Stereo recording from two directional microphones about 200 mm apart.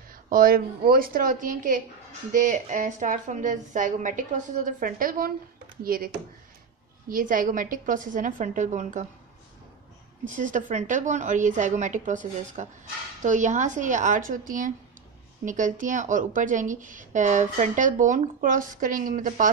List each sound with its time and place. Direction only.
0.1 s a woman's voice: 45° right (ahead or behind)
10.2 s a woman's voice: 40° right (ahead or behind)